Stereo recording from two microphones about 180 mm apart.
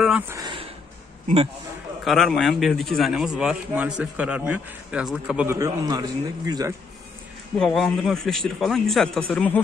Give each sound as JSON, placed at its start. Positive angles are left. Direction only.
{"t": 0.3, "sound": "a sound", "side_deg": -20}
{"t": 1.2, "sound": "a man's voice", "side_deg": -35}
{"t": 2.0, "sound": "a man's voice", "side_deg": 0}
{"t": 5.5, "sound": "a man's voice", "side_deg": -20}
{"t": 7.5, "sound": "a man's voice", "side_deg": 0}